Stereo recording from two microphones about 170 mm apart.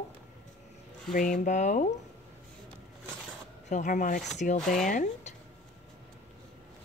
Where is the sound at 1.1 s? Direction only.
50° left (ahead or behind).